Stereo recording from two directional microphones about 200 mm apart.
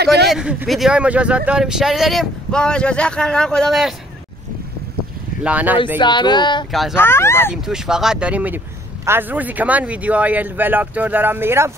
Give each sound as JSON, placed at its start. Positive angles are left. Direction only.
{"t": 0.3, "sound": "speech", "side_deg": -5}
{"t": 5.4, "sound": "speech", "side_deg": -5}
{"t": 5.9, "sound": "speech", "side_deg": 20}
{"t": 6.7, "sound": "speech", "side_deg": 0}
{"t": 7.0, "sound": "speech", "side_deg": 10}
{"t": 7.6, "sound": "speech", "side_deg": -5}